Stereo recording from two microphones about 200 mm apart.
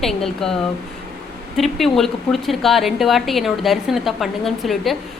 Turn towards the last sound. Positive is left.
turn(degrees=0)  # may be behind; listen again after turning